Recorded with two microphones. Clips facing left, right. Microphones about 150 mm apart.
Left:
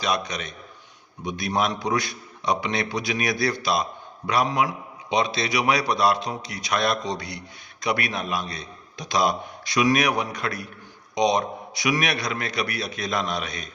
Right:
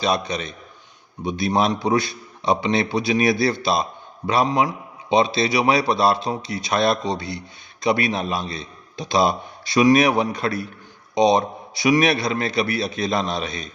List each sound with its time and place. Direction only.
0.0 s a man's voice: 30° right (ahead or behind)